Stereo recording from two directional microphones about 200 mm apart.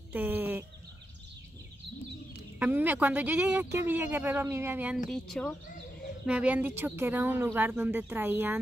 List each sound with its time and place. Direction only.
0.1 s speech: 10° right (ahead or behind)
2.6 s speech: 10° right (ahead or behind)
5.1 s speech: 5° left (ahead or behind)